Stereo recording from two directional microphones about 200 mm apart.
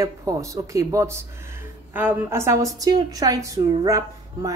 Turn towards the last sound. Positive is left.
turn(degrees=-15)  # may be behind; listen again after turning